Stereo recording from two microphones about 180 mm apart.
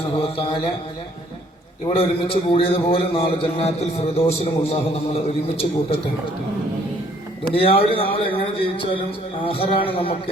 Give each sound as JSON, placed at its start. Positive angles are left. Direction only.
{"t": 0.2, "sound": "a sound", "side_deg": 30}
{"t": 1.9, "sound": "a man's voice", "side_deg": 30}
{"t": 7.5, "sound": "a man's voice", "side_deg": 30}